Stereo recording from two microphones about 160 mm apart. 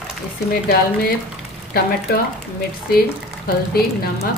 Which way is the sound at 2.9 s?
70° left (ahead or behind).